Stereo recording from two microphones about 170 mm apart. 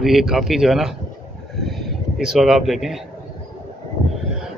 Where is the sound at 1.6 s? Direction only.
Centre (ahead or behind).